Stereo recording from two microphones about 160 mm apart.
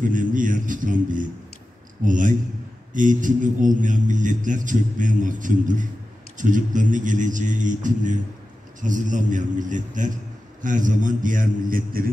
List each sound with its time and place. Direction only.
0.0 s a man's voice: 55° right (ahead or behind)